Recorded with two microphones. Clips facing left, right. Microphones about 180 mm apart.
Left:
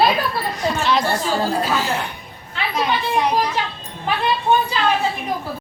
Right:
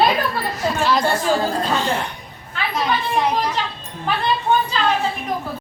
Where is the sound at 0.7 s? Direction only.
5° right (ahead or behind).